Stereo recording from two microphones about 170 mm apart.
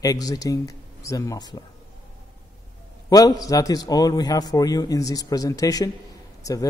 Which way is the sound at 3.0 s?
20° left (ahead or behind).